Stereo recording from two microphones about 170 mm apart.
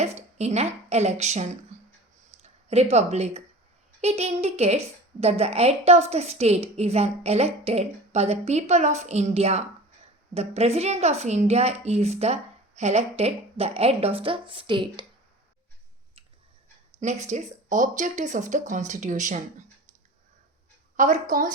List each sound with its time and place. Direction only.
0.0 s a woman's voice: 40° right (ahead or behind)
2.4 s a sound: 40° right (ahead or behind)
2.9 s a woman's voice: 40° right (ahead or behind)
17.0 s speech: 40° right (ahead or behind)
20.9 s speech: 50° right (ahead or behind)